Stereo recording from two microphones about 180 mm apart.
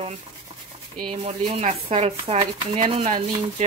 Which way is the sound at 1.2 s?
35° right (ahead or behind).